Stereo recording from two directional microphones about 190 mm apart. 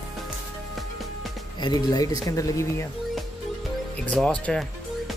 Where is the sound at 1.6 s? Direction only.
20° left (ahead or behind).